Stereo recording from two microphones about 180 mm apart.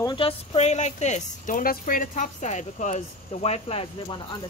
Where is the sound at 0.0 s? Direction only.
25° left (ahead or behind).